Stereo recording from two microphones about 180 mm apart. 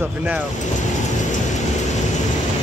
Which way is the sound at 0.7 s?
45° left (ahead or behind).